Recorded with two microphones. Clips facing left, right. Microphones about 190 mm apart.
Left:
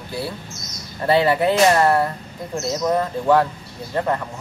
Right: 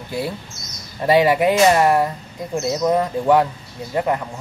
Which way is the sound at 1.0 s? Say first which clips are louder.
Right 2 dB; 15° right (ahead or behind).